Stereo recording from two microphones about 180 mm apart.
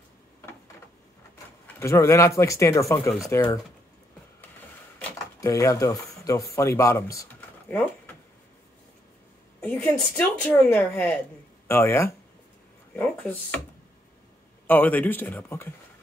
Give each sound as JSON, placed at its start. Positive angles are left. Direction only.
{"t": 1.8, "sound": "a woman's voice", "side_deg": 15}
{"t": 5.4, "sound": "speech", "side_deg": 20}
{"t": 9.6, "sound": "a woman's voice", "side_deg": 10}
{"t": 14.7, "sound": "a woman's voice", "side_deg": 10}